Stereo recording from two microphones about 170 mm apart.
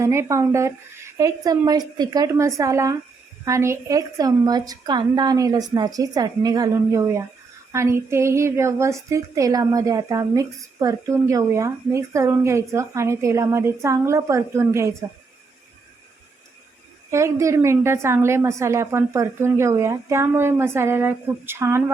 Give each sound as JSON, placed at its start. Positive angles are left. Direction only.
{"t": 0.0, "sound": "a woman's voice", "side_deg": -15}
{"t": 17.1, "sound": "a woman's voice", "side_deg": -15}